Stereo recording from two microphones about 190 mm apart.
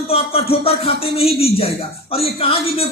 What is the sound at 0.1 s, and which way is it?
Speech, 30° left (ahead or behind).